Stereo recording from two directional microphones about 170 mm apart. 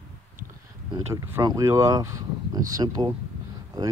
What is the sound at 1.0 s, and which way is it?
Speech, 20° right (ahead or behind).